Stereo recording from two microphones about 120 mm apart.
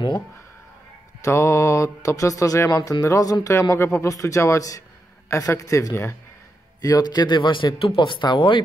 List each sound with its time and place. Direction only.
1.2 s speech: 25° left (ahead or behind)
6.8 s speech: 35° left (ahead or behind)